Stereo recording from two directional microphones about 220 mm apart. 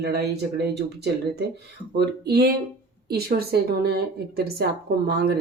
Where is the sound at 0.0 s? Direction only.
45° right (ahead or behind).